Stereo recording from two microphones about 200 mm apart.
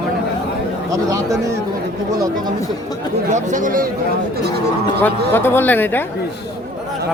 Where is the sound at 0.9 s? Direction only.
15° right (ahead or behind).